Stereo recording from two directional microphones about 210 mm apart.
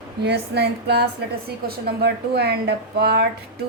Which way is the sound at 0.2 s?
50° right (ahead or behind).